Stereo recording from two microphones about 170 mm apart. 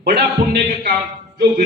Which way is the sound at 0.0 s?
65° right (ahead or behind).